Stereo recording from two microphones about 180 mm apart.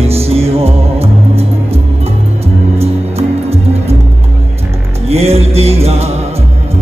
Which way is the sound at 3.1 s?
35° right (ahead or behind).